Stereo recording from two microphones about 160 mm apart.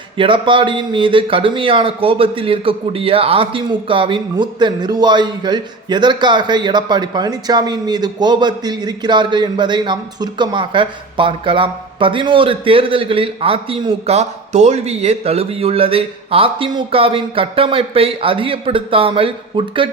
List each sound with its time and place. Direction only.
0.2 s speech: 30° right (ahead or behind)